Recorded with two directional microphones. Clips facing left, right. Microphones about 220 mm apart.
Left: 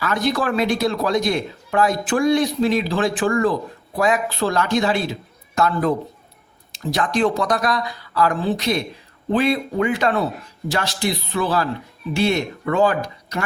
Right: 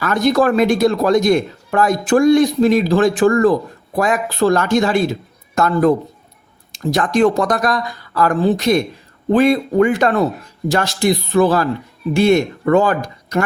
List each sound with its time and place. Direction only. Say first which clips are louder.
0.0 s speech: right 7 dB; 45° right (ahead or behind)